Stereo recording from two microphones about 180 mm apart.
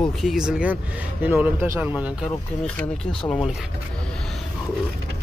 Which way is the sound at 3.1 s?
5° left (ahead or behind).